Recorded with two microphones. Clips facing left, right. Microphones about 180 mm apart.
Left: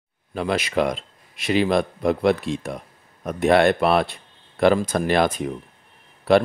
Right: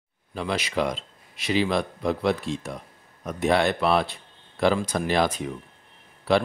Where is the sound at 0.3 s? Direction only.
55° left (ahead or behind).